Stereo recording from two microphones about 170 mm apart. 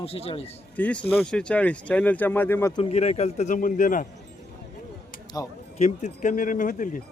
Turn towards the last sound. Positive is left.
turn(degrees=50)  # may be behind; listen again after turning